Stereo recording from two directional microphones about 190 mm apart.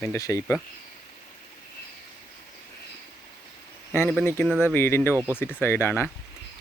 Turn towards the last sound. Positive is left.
turn(degrees=10)  # may be behind; listen again after turning